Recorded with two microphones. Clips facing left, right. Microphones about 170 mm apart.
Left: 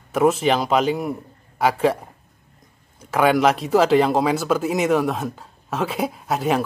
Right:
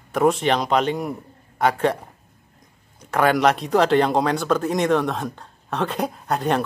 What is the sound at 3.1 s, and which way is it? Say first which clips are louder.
Speech: left 1 dB; centre (ahead or behind).